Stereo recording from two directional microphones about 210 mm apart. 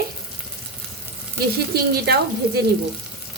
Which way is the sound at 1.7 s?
50° right (ahead or behind).